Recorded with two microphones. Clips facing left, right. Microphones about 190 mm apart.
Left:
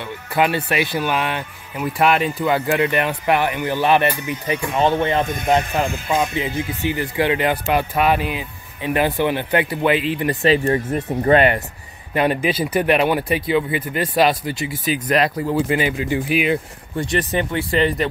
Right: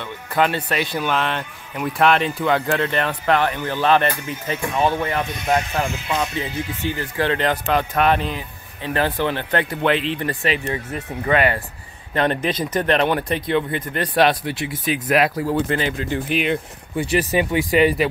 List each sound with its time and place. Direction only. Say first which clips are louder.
0.0 s speech: left 1 dB; 10° left (ahead or behind)
5.2 s speech: left 3 dB; 50° left (ahead or behind)
6.3 s speech: left 3 dB; 15° left (ahead or behind)
10.7 s speech: left 7 dB; 45° left (ahead or behind)
11.3 s speech: left 3 dB; 20° left (ahead or behind)
12.1 s speech: left 2 dB; 10° left (ahead or behind)
17.3 s speech: right 2 dB; 15° right (ahead or behind)